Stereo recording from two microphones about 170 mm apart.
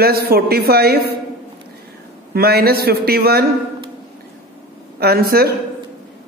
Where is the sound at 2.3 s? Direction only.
65° right (ahead or behind).